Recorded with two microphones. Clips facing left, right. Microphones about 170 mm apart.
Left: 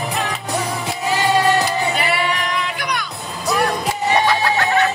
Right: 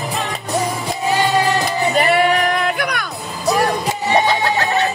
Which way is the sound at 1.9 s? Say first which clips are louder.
Right 6 dB; 50° right (ahead or behind).